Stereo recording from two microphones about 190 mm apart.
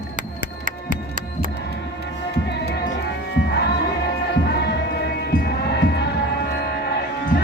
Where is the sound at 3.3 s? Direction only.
60° left (ahead or behind).